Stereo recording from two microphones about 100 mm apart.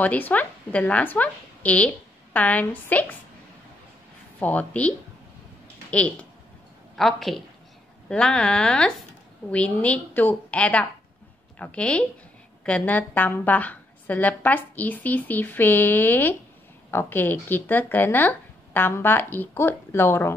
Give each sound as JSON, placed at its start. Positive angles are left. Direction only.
{"t": 0.0, "sound": "a woman's voice", "side_deg": 15}
{"t": 4.4, "sound": "a woman's voice", "side_deg": 15}